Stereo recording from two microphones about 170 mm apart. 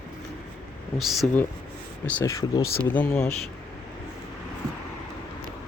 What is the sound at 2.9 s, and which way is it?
Speech, 10° left (ahead or behind).